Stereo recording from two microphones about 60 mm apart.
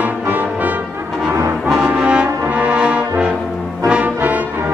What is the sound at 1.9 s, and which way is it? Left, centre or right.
Brass instrument, centre.